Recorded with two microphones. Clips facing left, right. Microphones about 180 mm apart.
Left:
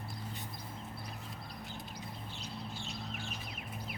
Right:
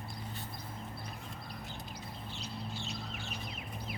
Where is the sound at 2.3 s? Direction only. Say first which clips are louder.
Right 4 dB; 50° left (ahead or behind).